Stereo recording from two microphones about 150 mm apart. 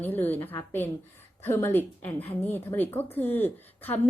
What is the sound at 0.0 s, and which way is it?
A woman's voice, 10° left (ahead or behind).